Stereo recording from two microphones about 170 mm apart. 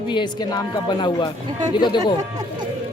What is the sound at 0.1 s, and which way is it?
Speech, 25° left (ahead or behind).